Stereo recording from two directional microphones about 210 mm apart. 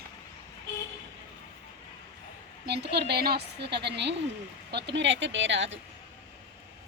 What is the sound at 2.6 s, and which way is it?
A woman's voice, 50° right (ahead or behind).